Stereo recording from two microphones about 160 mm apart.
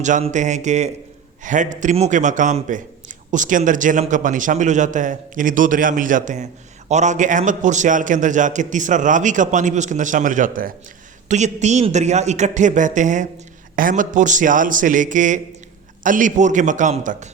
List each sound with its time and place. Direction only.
0.0 s a man's voice: 50° right (ahead or behind)
11.3 s a man's voice: 45° right (ahead or behind)